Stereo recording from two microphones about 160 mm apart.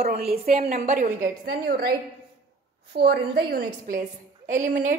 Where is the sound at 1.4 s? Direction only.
65° right (ahead or behind).